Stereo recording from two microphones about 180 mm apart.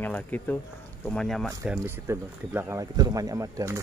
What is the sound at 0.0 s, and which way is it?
Speech, 10° left (ahead or behind).